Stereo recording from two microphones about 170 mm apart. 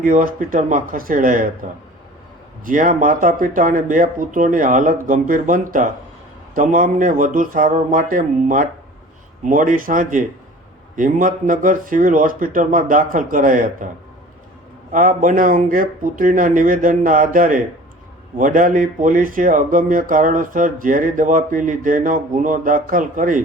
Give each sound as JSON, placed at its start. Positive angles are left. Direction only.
{"t": 0.0, "sound": "speech", "side_deg": -55}
{"t": 2.6, "sound": "speech", "side_deg": -55}
{"t": 14.9, "sound": "speech", "side_deg": -50}